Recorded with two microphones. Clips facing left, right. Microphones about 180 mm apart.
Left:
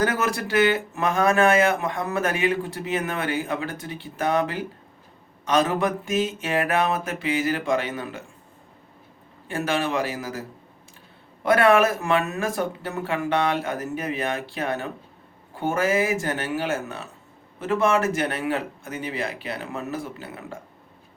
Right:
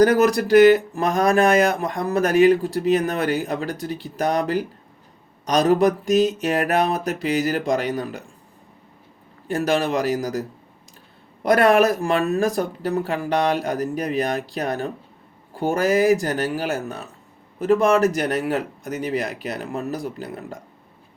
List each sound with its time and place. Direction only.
0.0 s speech: 40° right (ahead or behind)
9.5 s speech: 40° right (ahead or behind)
11.4 s speech: 40° right (ahead or behind)